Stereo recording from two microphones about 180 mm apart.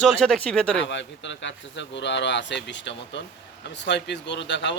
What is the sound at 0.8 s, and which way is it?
Speech, 90° left.